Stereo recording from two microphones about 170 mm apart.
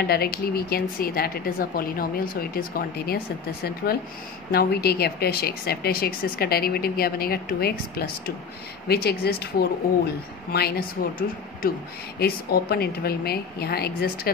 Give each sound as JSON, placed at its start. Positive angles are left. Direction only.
{"t": 0.0, "sound": "a woman's voice", "side_deg": 65}